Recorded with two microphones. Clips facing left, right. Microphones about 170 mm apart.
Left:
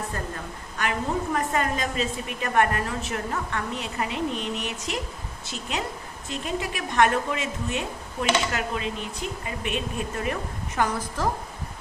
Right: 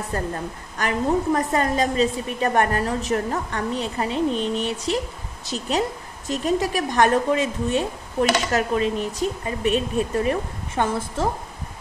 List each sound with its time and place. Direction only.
0.7 s a woman's voice: 40° right (ahead or behind)